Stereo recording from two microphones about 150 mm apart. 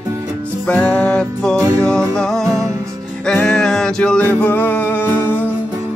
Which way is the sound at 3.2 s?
5° left (ahead or behind).